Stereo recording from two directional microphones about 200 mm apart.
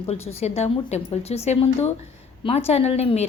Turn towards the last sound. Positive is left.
turn(degrees=30)  # may be behind; listen again after turning